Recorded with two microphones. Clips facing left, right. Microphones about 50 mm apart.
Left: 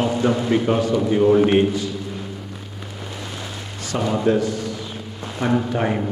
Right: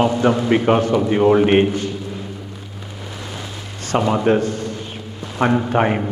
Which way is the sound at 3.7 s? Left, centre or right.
Right.